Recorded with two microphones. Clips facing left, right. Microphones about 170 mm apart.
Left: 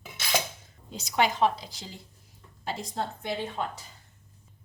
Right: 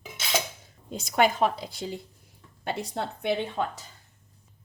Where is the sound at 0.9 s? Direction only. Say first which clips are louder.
Right 3 dB; 50° right (ahead or behind).